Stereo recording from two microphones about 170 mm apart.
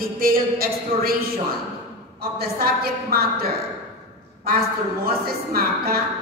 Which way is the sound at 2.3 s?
65° right (ahead or behind).